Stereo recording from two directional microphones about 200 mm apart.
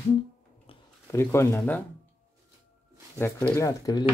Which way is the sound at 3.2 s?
10° left (ahead or behind).